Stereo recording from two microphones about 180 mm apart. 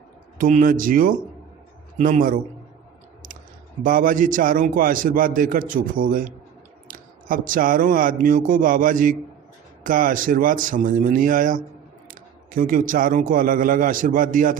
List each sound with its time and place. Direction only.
0.3 s a man's voice: 50° right (ahead or behind)
3.8 s a man's voice: 50° right (ahead or behind)